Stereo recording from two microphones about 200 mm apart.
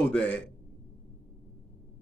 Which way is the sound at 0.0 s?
5° left (ahead or behind).